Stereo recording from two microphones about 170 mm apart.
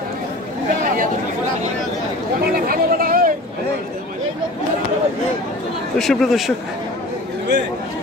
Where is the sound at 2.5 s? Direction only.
60° right (ahead or behind).